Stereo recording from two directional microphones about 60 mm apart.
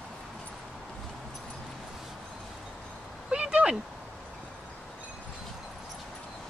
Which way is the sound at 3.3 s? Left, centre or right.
Centre.